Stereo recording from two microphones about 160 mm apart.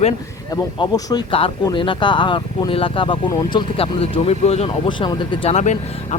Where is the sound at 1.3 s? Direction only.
35° left (ahead or behind).